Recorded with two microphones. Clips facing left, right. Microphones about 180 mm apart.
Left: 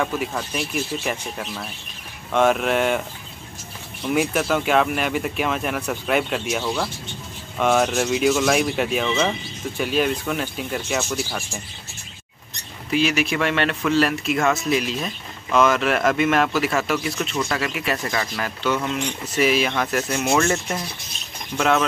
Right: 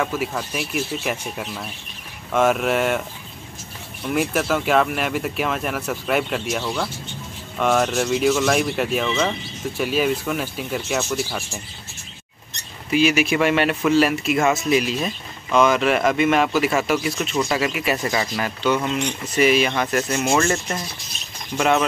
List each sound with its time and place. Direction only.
0.0 s speech: 5° right (ahead or behind)
4.1 s speech: centre (ahead or behind)
12.9 s speech: 5° right (ahead or behind)
19.3 s speech: centre (ahead or behind)